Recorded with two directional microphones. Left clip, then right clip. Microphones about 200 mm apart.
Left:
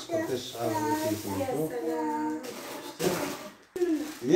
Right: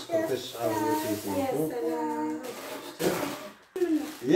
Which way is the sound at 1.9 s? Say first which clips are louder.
Even; centre (ahead or behind).